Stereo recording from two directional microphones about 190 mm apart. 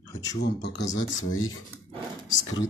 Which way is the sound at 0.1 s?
20° left (ahead or behind).